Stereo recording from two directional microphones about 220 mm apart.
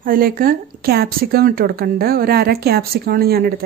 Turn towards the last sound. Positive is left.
turn(degrees=-45)  # may be behind; listen again after turning